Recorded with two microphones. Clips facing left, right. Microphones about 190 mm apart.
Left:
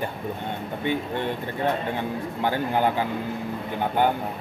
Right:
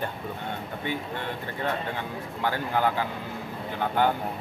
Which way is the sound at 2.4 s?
20° left (ahead or behind).